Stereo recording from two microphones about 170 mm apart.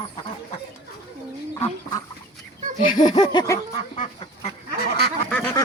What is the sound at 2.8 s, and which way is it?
Laughter, 50° left (ahead or behind).